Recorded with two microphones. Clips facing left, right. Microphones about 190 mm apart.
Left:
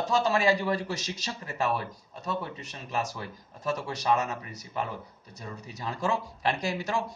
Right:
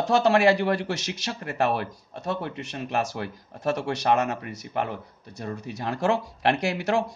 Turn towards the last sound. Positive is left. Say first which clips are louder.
# right 6 dB
turn(degrees=-70)  # may be behind; listen again after turning